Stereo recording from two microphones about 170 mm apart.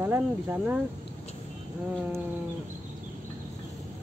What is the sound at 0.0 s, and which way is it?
Speech, 10° right (ahead or behind).